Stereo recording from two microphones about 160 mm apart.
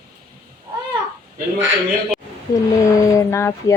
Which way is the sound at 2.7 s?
20° left (ahead or behind).